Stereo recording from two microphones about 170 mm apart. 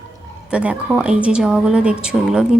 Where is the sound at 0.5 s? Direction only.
5° right (ahead or behind).